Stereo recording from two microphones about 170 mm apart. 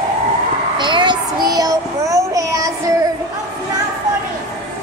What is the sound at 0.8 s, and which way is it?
Child singing, 25° right (ahead or behind).